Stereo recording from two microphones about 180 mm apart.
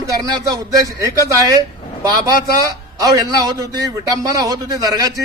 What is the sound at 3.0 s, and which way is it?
A man's voice, 20° right (ahead or behind).